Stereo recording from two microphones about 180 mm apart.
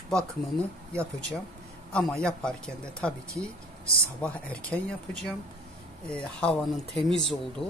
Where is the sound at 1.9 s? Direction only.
5° left (ahead or behind).